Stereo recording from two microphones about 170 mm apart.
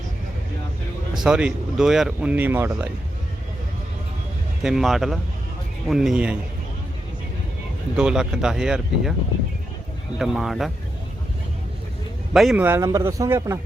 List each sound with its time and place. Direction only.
1.2 s speech: 5° right (ahead or behind)
4.6 s speech: centre (ahead or behind)
7.9 s speech: 5° right (ahead or behind)
10.2 s speech: centre (ahead or behind)
12.3 s speech: centre (ahead or behind)
12.5 s speech: 15° right (ahead or behind)